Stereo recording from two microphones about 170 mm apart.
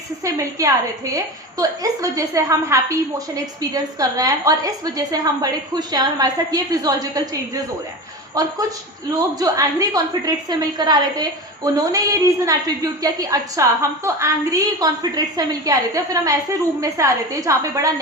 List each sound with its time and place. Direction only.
0.3 s a woman's voice: 20° right (ahead or behind)